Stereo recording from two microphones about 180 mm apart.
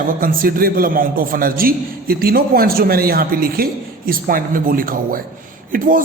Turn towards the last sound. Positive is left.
turn(degrees=-50)  # may be behind; listen again after turning